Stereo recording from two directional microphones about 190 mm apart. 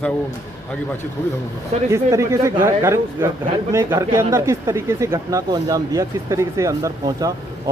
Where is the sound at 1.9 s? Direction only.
15° right (ahead or behind).